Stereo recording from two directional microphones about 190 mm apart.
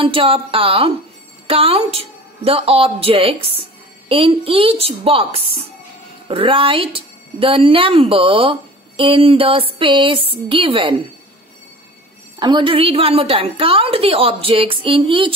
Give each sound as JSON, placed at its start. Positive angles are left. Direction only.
{"t": 0.0, "sound": "a woman's voice", "side_deg": -30}
{"t": 12.4, "sound": "speech", "side_deg": -25}